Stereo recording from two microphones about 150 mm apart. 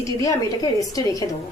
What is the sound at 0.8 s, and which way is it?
Speech, 25° left (ahead or behind).